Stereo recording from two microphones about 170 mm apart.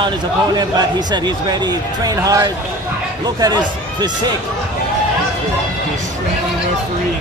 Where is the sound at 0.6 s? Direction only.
25° right (ahead or behind).